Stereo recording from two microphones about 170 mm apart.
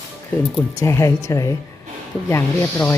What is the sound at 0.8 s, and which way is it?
Speech, 15° left (ahead or behind).